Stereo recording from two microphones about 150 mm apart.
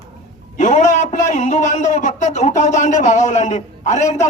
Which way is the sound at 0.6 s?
50° left (ahead or behind).